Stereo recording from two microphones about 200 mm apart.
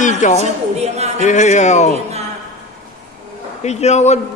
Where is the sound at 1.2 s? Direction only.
40° left (ahead or behind).